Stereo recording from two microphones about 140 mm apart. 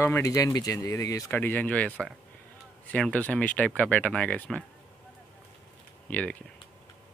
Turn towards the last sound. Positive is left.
turn(degrees=10)  # may be behind; listen again after turning